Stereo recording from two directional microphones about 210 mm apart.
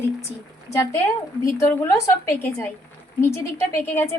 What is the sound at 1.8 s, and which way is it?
A woman's voice, 10° left (ahead or behind).